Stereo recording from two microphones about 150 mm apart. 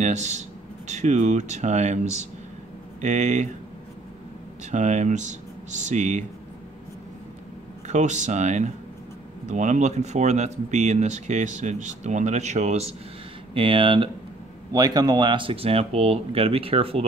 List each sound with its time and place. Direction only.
0.0 s speech: 50° right (ahead or behind)
4.6 s speech: 50° right (ahead or behind)
7.9 s speech: 50° right (ahead or behind)
13.6 s speech: 35° right (ahead or behind)